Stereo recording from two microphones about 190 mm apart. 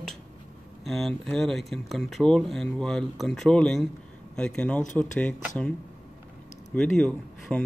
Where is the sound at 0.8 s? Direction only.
Centre (ahead or behind).